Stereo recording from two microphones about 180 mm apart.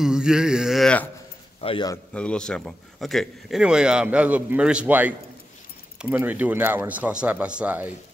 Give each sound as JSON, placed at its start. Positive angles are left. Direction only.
{"t": 0.0, "sound": "a sound", "side_deg": -5}
{"t": 1.6, "sound": "speech", "side_deg": 30}
{"t": 2.1, "sound": "speech", "side_deg": 5}